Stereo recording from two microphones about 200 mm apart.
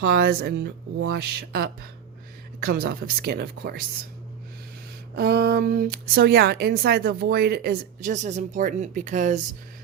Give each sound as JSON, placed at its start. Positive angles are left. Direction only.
{"t": 0.0, "sound": "speech", "side_deg": -50}
{"t": 5.1, "sound": "speech", "side_deg": -50}